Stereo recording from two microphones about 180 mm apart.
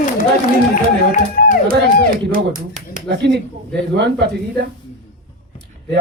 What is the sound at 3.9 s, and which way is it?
Speech, 70° right (ahead or behind).